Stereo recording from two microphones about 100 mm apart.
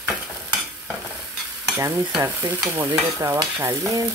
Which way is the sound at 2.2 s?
25° right (ahead or behind).